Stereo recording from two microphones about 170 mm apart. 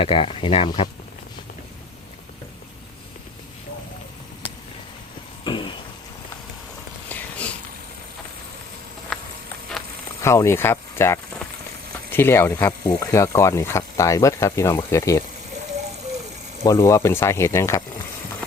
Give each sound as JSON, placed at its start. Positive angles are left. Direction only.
{"t": 0.0, "sound": "speech", "side_deg": 30}
{"t": 5.5, "sound": "a sound", "side_deg": 30}
{"t": 7.1, "sound": "a sound", "side_deg": 5}
{"t": 9.1, "sound": "insect", "side_deg": 0}
{"t": 10.2, "sound": "speech", "side_deg": 15}
{"t": 16.6, "sound": "speech", "side_deg": 15}